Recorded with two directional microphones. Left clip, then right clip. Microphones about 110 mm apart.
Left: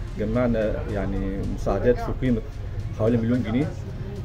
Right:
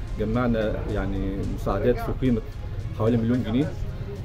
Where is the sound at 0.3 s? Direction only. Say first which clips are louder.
Left 2 dB; 20° right (ahead or behind).